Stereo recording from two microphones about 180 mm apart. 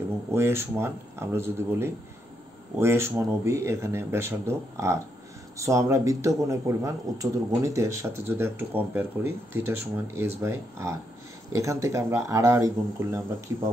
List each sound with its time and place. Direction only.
0.3 s speech: 15° right (ahead or behind)